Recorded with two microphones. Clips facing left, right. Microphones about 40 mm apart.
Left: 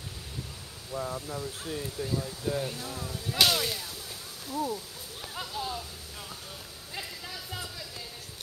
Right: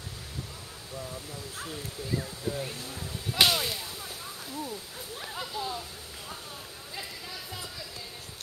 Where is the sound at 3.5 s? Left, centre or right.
Centre.